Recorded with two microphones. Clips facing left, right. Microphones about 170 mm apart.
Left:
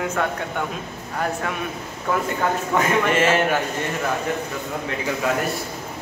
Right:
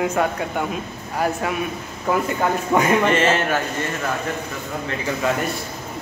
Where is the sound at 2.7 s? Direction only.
15° right (ahead or behind).